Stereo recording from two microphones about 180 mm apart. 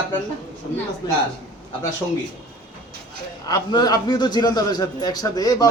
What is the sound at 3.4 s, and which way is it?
A man's voice, 20° left (ahead or behind).